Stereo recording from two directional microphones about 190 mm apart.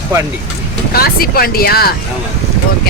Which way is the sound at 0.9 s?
50° left (ahead or behind).